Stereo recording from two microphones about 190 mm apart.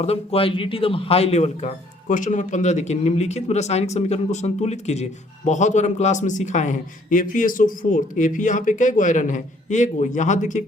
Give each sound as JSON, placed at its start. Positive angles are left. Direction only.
{"t": 0.0, "sound": "a man's voice", "side_deg": 30}